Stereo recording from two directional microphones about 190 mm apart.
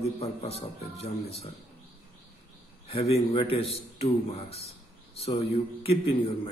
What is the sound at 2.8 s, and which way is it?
A man's voice, 30° left (ahead or behind).